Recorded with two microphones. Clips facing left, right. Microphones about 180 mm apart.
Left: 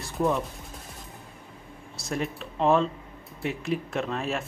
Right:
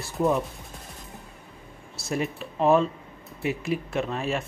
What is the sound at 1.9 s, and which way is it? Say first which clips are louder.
Speech: right 2 dB; 5° right (ahead or behind).